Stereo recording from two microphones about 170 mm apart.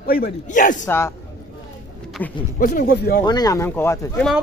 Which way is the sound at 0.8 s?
15° left (ahead or behind).